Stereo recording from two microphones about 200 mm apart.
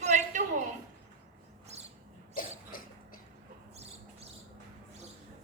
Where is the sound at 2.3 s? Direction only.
45° left (ahead or behind).